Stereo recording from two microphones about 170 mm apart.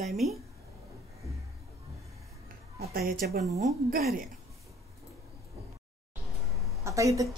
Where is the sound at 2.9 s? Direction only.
60° right (ahead or behind).